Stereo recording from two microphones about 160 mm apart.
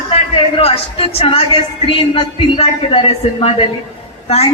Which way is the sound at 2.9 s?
35° left (ahead or behind).